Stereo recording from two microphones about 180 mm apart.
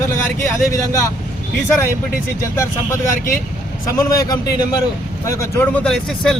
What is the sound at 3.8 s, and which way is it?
A man's voice, 20° left (ahead or behind).